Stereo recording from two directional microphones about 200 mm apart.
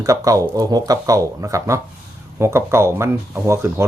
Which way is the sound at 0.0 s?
15° right (ahead or behind).